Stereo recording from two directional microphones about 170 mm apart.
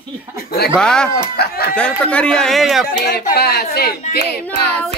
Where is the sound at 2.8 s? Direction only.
60° left (ahead or behind).